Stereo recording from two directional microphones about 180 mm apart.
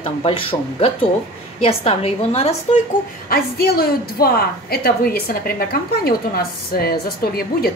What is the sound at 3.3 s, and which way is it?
A woman's voice, 60° left (ahead or behind).